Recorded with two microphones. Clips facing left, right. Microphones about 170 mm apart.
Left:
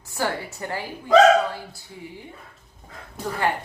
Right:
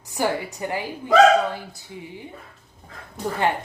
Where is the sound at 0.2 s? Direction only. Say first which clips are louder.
Right 3 dB; 15° right (ahead or behind).